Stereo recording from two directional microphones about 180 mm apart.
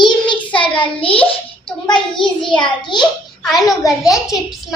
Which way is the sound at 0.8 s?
30° left (ahead or behind).